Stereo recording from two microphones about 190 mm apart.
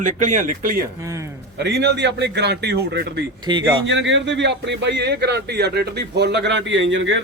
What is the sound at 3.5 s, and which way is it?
Speech, 25° right (ahead or behind).